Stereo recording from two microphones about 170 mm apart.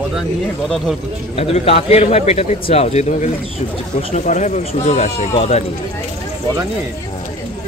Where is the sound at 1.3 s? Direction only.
35° left (ahead or behind).